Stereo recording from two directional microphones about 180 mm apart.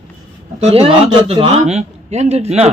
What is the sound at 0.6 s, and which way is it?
Speech, 35° right (ahead or behind).